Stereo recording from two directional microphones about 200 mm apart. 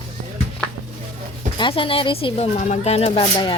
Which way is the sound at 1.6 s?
25° left (ahead or behind).